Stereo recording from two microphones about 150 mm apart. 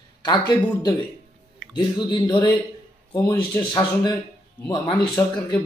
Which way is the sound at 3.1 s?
20° left (ahead or behind).